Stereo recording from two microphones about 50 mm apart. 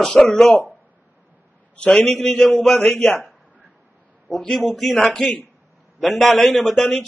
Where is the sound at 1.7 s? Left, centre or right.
Left.